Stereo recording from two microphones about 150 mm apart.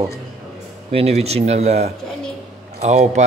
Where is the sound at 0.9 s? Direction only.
45° right (ahead or behind).